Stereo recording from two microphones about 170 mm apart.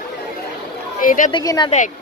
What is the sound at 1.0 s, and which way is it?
Speech, 55° left (ahead or behind).